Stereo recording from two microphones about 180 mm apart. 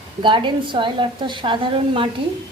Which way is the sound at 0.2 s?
25° right (ahead or behind).